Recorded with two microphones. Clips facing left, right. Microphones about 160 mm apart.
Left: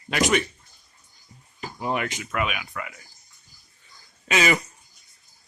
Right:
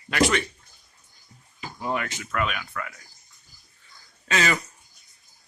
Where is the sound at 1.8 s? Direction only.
20° left (ahead or behind).